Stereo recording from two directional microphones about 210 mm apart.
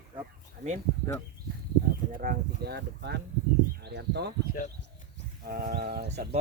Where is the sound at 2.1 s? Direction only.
40° right (ahead or behind).